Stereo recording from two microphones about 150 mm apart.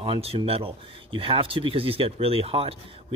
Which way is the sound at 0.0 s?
35° right (ahead or behind).